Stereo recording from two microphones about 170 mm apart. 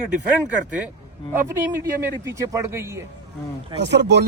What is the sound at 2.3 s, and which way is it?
Speech, 15° right (ahead or behind).